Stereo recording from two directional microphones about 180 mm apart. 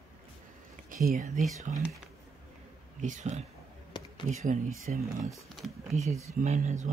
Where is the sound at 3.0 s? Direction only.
40° right (ahead or behind).